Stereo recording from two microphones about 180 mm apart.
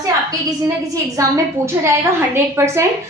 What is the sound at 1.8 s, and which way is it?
A woman's voice, 15° right (ahead or behind).